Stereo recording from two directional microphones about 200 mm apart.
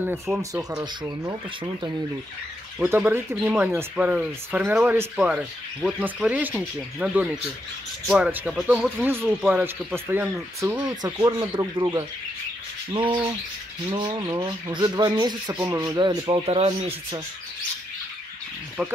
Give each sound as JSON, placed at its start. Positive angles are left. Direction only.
{"t": 0.0, "sound": "speech", "side_deg": -10}
{"t": 2.8, "sound": "speech", "side_deg": -10}
{"t": 13.9, "sound": "speech", "side_deg": -20}